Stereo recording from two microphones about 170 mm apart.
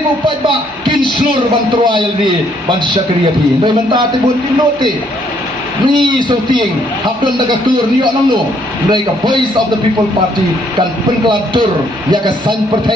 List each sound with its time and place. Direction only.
5.9 s speech: 25° right (ahead or behind)
8.9 s speech: 25° right (ahead or behind)
10.8 s speech: 25° right (ahead or behind)